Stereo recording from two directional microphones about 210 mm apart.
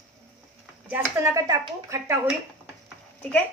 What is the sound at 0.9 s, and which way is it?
Speech, 15° right (ahead or behind).